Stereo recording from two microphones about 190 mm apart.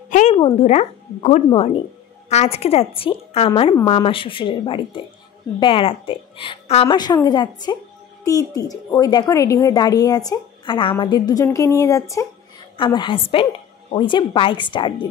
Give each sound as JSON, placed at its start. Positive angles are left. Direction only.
{"t": 0.1, "sound": "a woman's voice", "side_deg": 35}